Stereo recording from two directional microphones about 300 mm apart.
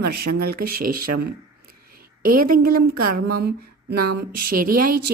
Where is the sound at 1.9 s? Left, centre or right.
Right.